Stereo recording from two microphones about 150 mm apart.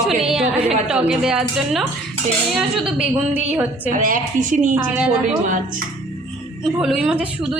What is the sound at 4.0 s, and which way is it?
Speech, 65° right (ahead or behind).